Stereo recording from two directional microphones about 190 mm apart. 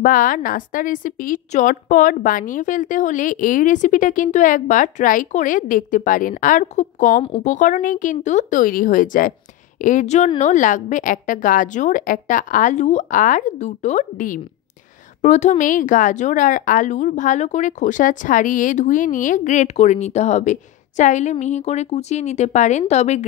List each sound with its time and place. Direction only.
0.0 s a woman's voice: 45° left (ahead or behind)